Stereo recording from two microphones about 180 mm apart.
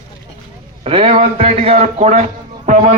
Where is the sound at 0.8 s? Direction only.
30° right (ahead or behind).